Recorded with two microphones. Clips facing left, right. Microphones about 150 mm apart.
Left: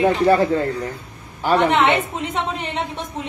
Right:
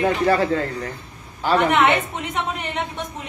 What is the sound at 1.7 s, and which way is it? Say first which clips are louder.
A woman's voice: left 1 dB; 25° left (ahead or behind).